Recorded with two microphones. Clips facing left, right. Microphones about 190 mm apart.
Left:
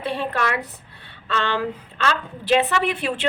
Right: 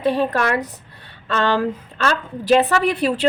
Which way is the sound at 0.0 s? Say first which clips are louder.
Right 6 dB; 40° right (ahead or behind).